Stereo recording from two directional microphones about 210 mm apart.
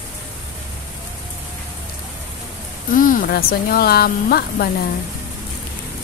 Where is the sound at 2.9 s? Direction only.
40° left (ahead or behind).